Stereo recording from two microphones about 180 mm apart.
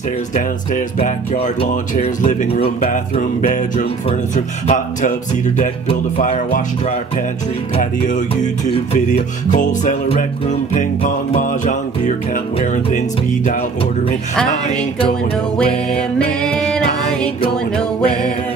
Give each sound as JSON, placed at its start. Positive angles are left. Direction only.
{"t": 0.9, "sound": "speech", "side_deg": 40}
{"t": 2.9, "sound": "music", "side_deg": 45}
{"t": 8.9, "sound": "music", "side_deg": 40}
{"t": 14.5, "sound": "speech", "side_deg": 30}
{"t": 15.5, "sound": "music", "side_deg": 5}